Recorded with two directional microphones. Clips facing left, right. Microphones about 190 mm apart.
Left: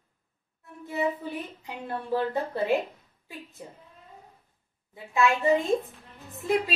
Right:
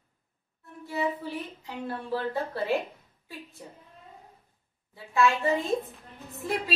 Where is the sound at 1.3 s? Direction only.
15° left (ahead or behind).